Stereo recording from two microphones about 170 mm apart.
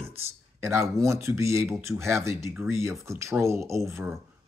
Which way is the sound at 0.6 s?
15° right (ahead or behind).